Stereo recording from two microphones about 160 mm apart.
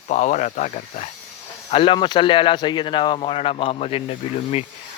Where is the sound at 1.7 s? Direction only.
35° left (ahead or behind).